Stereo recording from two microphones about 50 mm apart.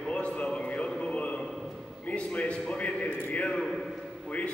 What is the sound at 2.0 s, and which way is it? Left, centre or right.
Speech, left.